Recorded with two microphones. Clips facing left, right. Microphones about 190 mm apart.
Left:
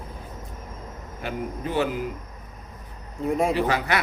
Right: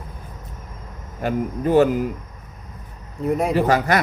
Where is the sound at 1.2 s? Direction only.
45° right (ahead or behind).